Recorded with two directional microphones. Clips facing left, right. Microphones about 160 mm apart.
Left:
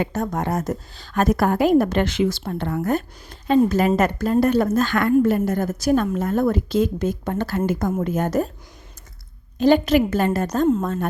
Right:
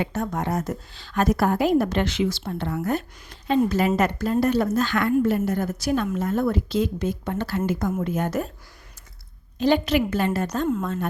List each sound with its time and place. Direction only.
0.0 s a woman's voice: 45° left (ahead or behind)
9.6 s a woman's voice: 45° left (ahead or behind)